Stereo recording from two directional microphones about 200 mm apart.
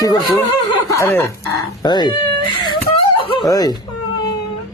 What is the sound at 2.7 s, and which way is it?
Snicker, 20° left (ahead or behind).